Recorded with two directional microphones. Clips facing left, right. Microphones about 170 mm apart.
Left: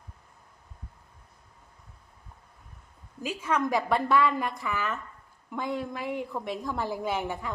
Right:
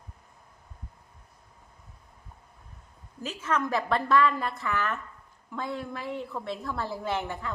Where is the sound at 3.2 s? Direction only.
10° left (ahead or behind).